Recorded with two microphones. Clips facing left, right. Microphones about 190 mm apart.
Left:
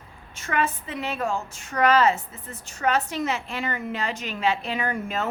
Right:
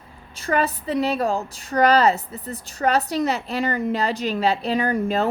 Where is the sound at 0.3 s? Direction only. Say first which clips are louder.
Right 4 dB; 35° right (ahead or behind).